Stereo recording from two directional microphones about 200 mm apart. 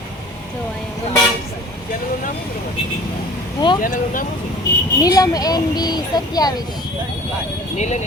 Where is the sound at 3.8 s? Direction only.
45° left (ahead or behind).